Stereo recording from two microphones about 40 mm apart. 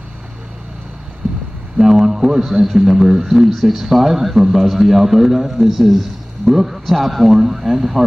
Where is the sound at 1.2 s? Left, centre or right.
Centre.